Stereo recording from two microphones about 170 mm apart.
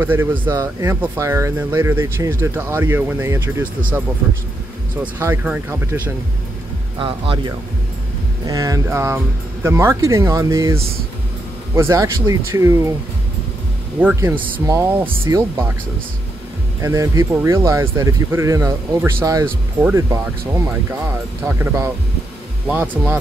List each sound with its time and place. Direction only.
0.0 s speech: 10° right (ahead or behind)
5.0 s speech: 10° right (ahead or behind)
7.0 s speech: 30° right (ahead or behind)
8.5 s speech: 20° right (ahead or behind)
13.9 s speech: 10° right (ahead or behind)
16.8 s speech: 20° right (ahead or behind)